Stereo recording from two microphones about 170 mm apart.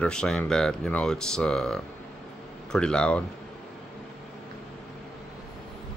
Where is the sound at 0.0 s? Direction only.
5° left (ahead or behind).